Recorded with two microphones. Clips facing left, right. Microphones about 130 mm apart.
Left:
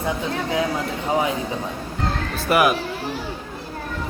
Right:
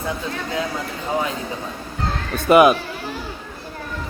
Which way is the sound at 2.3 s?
20° right (ahead or behind).